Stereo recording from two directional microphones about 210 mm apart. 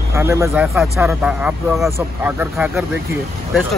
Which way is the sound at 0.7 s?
Centre (ahead or behind).